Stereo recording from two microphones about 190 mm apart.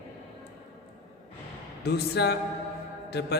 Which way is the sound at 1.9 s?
60° left (ahead or behind).